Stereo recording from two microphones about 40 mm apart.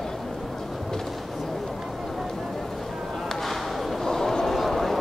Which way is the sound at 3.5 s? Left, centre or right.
Centre.